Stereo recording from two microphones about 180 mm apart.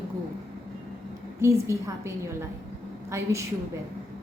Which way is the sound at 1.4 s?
15° right (ahead or behind).